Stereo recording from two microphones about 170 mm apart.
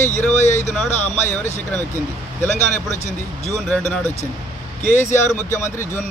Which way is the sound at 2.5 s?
45° left (ahead or behind).